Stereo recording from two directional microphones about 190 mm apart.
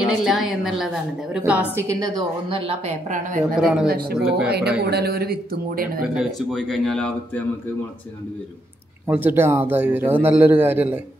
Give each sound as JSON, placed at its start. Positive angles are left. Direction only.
{"t": 0.0, "sound": "a man's voice", "side_deg": 0}
{"t": 2.5, "sound": "a woman's voice", "side_deg": -30}
{"t": 3.5, "sound": "speech", "side_deg": -5}
{"t": 3.8, "sound": "speech", "side_deg": -55}
{"t": 6.1, "sound": "speech", "side_deg": 0}
{"t": 9.0, "sound": "a man's voice", "side_deg": -10}